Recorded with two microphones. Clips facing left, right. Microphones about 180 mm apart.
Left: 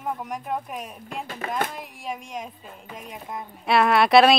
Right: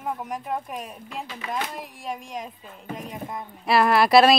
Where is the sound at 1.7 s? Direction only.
Centre (ahead or behind).